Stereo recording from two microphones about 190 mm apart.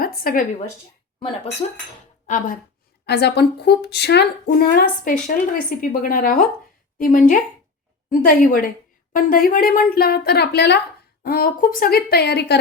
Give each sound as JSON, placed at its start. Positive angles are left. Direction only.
{"t": 0.0, "sound": "a woman's voice", "side_deg": 50}
{"t": 1.6, "sound": "speech", "side_deg": 35}
{"t": 3.1, "sound": "speech", "side_deg": 60}
{"t": 11.2, "sound": "speech", "side_deg": 50}